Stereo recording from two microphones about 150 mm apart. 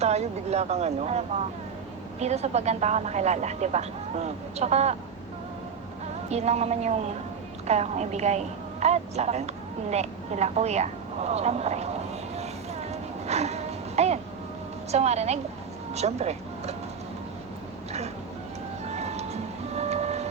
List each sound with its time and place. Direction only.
0.0 s speech: 45° right (ahead or behind)
6.2 s a woman's voice: 45° right (ahead or behind)
12.9 s a sound: 45° right (ahead or behind)
14.9 s speech: 45° right (ahead or behind)
18.9 s music: 45° right (ahead or behind)